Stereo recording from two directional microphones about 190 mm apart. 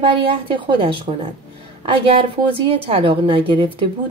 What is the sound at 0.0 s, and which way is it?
A woman's voice, 25° right (ahead or behind).